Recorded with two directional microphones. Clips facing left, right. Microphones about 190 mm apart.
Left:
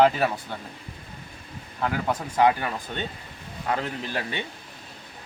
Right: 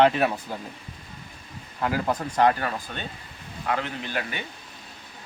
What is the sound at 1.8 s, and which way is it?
Speech, 5° right (ahead or behind).